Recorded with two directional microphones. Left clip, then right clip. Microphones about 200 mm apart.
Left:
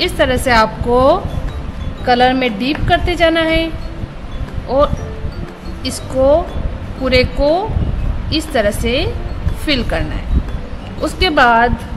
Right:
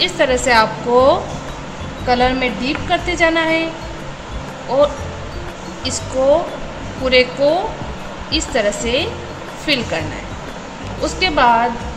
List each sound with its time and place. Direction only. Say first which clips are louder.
0.0 s a woman's voice: even; 35° left (ahead or behind)
4.6 s a woman's voice: left 1 dB; 35° left (ahead or behind)
7.1 s a woman's voice: even; 35° left (ahead or behind)
11.0 s a woman's voice: left 3 dB; 35° left (ahead or behind)